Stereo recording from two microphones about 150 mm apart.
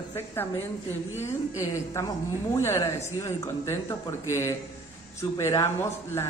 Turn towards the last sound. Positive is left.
turn(degrees=15)  # may be behind; listen again after turning